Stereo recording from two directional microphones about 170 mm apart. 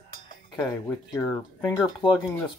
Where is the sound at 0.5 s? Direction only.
20° left (ahead or behind).